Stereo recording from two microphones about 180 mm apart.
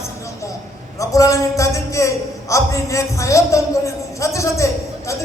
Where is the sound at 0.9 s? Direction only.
20° left (ahead or behind).